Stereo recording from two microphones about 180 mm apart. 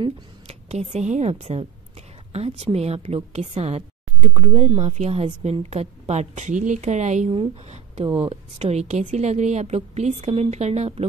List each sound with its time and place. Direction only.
0.0 s a woman's voice: 35° right (ahead or behind)